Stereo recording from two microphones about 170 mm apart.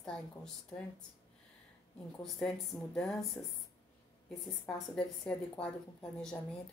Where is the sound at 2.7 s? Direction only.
20° left (ahead or behind).